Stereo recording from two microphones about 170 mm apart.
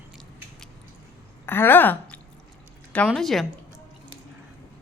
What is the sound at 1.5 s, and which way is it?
A woman's voice, 10° left (ahead or behind).